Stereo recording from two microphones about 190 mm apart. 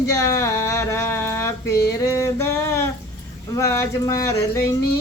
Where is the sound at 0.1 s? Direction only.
15° left (ahead or behind).